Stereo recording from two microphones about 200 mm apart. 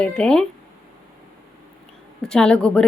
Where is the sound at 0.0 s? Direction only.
5° left (ahead or behind).